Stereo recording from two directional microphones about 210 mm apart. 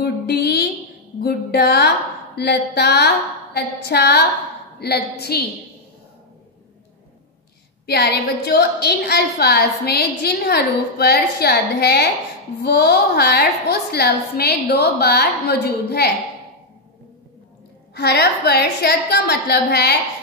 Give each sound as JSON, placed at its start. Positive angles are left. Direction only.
{"t": 0.0, "sound": "a sound", "side_deg": 50}
{"t": 1.2, "sound": "a woman's voice", "side_deg": 50}
{"t": 7.8, "sound": "a woman's voice", "side_deg": 50}
{"t": 17.9, "sound": "a woman's voice", "side_deg": 50}